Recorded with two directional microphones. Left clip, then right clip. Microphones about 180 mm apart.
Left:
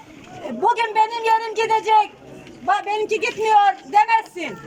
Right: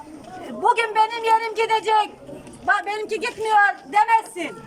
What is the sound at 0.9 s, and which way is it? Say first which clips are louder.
A man's voice: left 1 dB; 15° left (ahead or behind).